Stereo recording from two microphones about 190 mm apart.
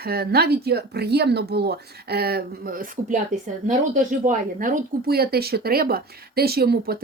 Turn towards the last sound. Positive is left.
turn(degrees=-55)  # may be behind; listen again after turning